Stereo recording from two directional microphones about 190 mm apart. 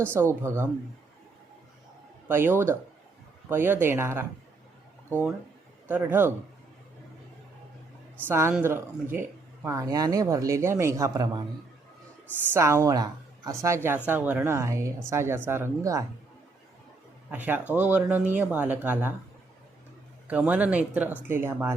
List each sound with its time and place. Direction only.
0.0 s speech: 15° right (ahead or behind)
2.2 s speech: 10° right (ahead or behind)
8.3 s speech: 15° right (ahead or behind)
12.5 s speech: 15° right (ahead or behind)
17.3 s speech: 10° right (ahead or behind)
20.2 s speech: 10° right (ahead or behind)